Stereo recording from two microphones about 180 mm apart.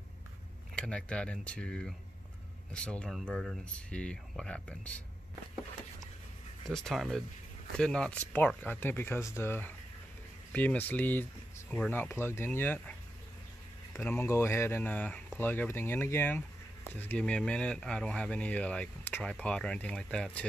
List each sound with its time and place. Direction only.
0.7 s speech: 5° left (ahead or behind)
6.6 s speech: centre (ahead or behind)
13.9 s speech: 15° left (ahead or behind)